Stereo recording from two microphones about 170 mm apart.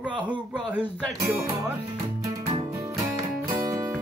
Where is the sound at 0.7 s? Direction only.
15° right (ahead or behind).